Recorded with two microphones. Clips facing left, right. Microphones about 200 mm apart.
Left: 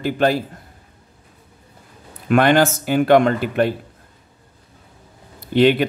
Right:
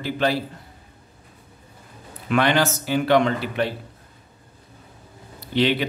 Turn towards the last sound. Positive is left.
turn(degrees=50)  # may be behind; listen again after turning